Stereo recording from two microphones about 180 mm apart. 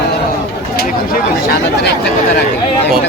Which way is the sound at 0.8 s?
55° left (ahead or behind).